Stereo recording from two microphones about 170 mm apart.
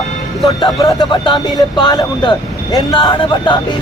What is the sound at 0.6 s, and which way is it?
Speech, 30° left (ahead or behind).